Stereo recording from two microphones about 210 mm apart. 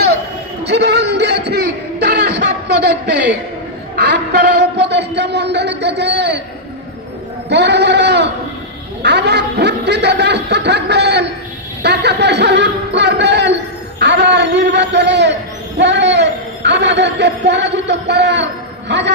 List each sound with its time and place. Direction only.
0.7 s music: 55° right (ahead or behind)
3.9 s speech: 55° right (ahead or behind)
7.4 s a man's voice: 55° right (ahead or behind)